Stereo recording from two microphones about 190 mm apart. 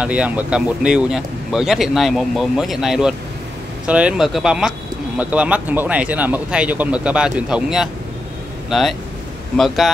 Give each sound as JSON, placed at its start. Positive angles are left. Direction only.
{"t": 0.0, "sound": "speech", "side_deg": -5}